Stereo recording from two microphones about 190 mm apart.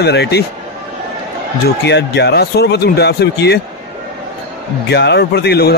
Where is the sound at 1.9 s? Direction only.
60° left (ahead or behind).